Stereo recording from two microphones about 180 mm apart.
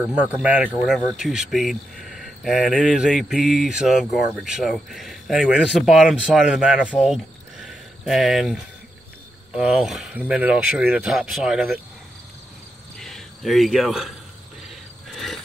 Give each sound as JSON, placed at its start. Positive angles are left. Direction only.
{"t": 0.0, "sound": "speech", "side_deg": -5}
{"t": 13.0, "sound": "speech", "side_deg": 0}